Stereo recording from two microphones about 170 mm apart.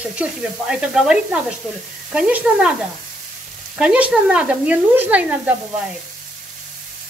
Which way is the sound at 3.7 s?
5° right (ahead or behind).